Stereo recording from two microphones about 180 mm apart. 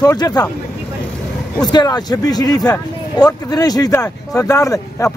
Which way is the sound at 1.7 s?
25° left (ahead or behind).